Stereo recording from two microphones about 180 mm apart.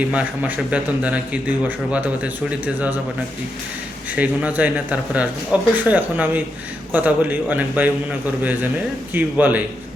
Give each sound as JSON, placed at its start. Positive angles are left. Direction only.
{"t": 0.1, "sound": "a man's voice", "side_deg": -10}
{"t": 4.1, "sound": "a man's voice", "side_deg": -10}
{"t": 9.1, "sound": "a man's voice", "side_deg": -10}